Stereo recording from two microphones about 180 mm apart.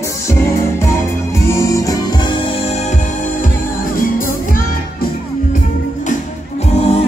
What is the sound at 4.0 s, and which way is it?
Music, 50° left (ahead or behind).